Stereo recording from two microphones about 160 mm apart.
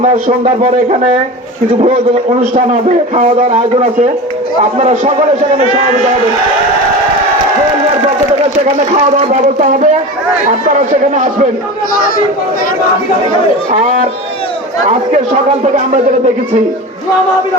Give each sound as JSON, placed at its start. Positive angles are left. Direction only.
{"t": 0.0, "sound": "speech", "side_deg": -50}
{"t": 3.2, "sound": "speech", "side_deg": -50}
{"t": 9.1, "sound": "speech", "side_deg": -50}
{"t": 13.8, "sound": "speech", "side_deg": -55}
{"t": 15.6, "sound": "speech", "side_deg": -50}